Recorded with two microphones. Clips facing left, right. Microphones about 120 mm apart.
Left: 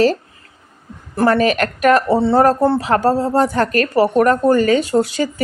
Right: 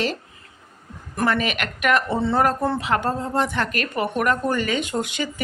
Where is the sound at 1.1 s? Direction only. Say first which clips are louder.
Left 8 dB; 35° left (ahead or behind).